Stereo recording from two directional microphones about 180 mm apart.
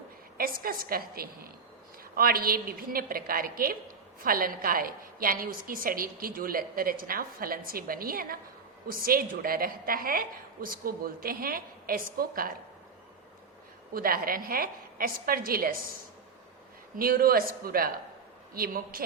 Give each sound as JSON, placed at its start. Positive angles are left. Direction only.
{"t": 0.3, "sound": "a woman's voice", "side_deg": -55}
{"t": 13.9, "sound": "a woman's voice", "side_deg": -55}
{"t": 17.0, "sound": "a woman's voice", "side_deg": -55}